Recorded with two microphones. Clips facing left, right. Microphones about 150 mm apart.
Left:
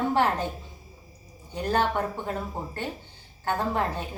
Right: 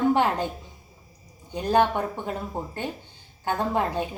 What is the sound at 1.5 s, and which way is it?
Speech, 15° right (ahead or behind).